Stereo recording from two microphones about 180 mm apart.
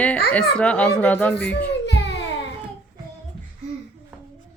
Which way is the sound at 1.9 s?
75° left (ahead or behind).